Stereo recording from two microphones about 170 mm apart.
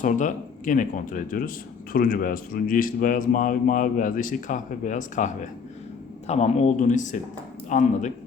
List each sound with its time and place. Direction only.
0.0 s speech: 50° left (ahead or behind)